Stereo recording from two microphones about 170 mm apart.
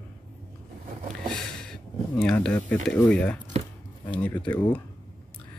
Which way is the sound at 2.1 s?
5° left (ahead or behind).